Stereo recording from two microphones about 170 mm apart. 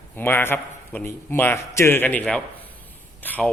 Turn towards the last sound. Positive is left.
turn(degrees=10)  # may be behind; listen again after turning